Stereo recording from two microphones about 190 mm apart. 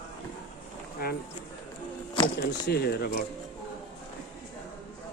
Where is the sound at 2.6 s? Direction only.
55° left (ahead or behind).